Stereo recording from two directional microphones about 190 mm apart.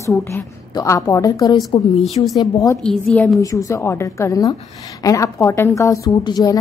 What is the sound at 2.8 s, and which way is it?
Speech, 5° left (ahead or behind).